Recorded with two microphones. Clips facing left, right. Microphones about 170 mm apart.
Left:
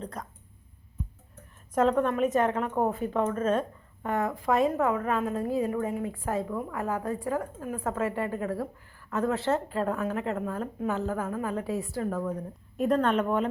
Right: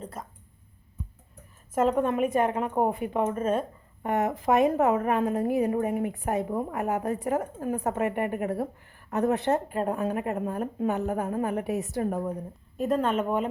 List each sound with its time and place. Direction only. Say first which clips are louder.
0.0 s speech: left 1 dB; 5° right (ahead or behind)
1.7 s a woman's voice: even; 10° right (ahead or behind)
12.7 s a woman's voice: left 1 dB; centre (ahead or behind)